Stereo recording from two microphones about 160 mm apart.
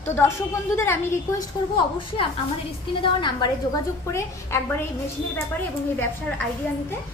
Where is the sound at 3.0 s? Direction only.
30° left (ahead or behind).